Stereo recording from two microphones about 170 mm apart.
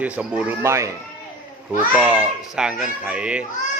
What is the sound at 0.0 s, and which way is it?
Speech, 5° right (ahead or behind).